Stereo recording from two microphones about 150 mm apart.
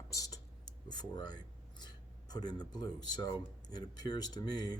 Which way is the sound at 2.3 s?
25° left (ahead or behind).